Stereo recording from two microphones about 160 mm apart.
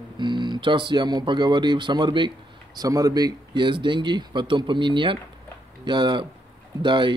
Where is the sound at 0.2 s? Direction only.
30° right (ahead or behind).